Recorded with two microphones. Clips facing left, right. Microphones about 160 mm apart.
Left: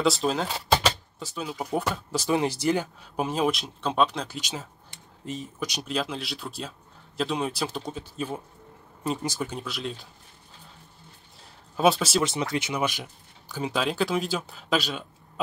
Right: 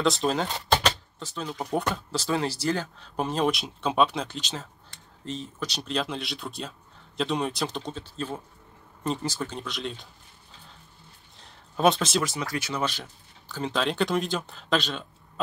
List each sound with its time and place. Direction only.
0.0 s speech: centre (ahead or behind)
2.1 s speech: 15° left (ahead or behind)
3.2 s speech: 5° left (ahead or behind)
4.4 s speech: 10° left (ahead or behind)
11.7 s speech: 5° left (ahead or behind)
12.2 s speech: 25° left (ahead or behind); by 15.4 s 5° left (ahead or behind)